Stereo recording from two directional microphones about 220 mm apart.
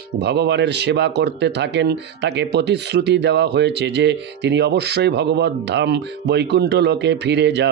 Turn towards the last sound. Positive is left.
turn(degrees=-50)  # may be behind; listen again after turning